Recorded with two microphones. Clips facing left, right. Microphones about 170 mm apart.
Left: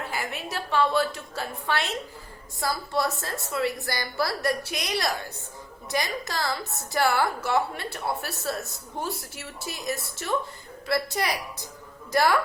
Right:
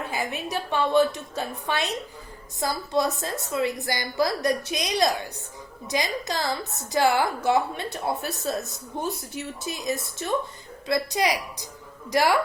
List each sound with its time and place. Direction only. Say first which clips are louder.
0.0 s a woman's voice: right 3 dB; 20° right (ahead or behind)